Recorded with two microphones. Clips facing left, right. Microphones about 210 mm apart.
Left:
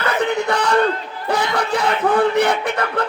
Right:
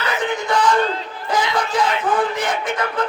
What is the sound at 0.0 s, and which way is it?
Crowd, 65° left (ahead or behind).